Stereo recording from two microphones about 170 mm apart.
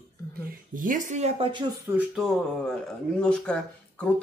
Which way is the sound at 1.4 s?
25° right (ahead or behind).